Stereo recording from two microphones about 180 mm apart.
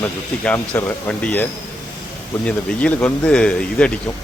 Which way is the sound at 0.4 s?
10° left (ahead or behind).